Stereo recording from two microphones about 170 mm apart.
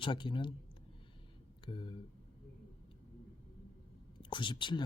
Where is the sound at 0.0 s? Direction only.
30° left (ahead or behind).